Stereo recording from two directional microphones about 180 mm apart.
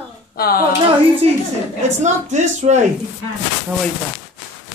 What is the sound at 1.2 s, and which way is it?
Speech, 35° right (ahead or behind).